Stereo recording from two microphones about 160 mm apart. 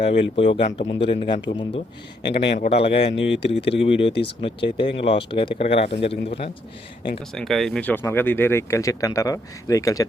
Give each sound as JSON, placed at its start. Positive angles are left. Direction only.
{"t": 0.0, "sound": "speech", "side_deg": 35}
{"t": 2.9, "sound": "speech", "side_deg": 90}
{"t": 3.8, "sound": "speech", "side_deg": 35}
{"t": 7.3, "sound": "speech", "side_deg": 0}